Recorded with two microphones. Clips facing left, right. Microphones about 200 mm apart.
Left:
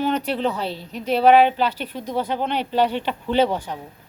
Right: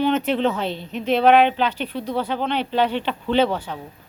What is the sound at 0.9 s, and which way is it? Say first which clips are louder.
Speech: right 2 dB; 40° left (ahead or behind).